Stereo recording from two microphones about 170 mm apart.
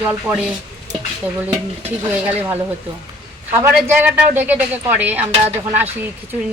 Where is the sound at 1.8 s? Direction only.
10° right (ahead or behind).